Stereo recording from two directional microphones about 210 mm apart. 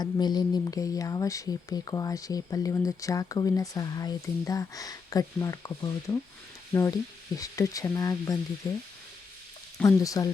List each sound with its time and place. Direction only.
0.0 s speech: 20° left (ahead or behind)
9.8 s speech: 15° left (ahead or behind)